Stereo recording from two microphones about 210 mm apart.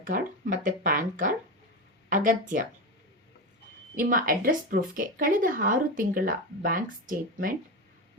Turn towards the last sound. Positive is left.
turn(degrees=-40)  # may be behind; listen again after turning